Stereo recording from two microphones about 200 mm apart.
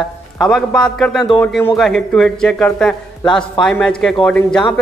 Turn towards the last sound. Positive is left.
turn(degrees=5)  # may be behind; listen again after turning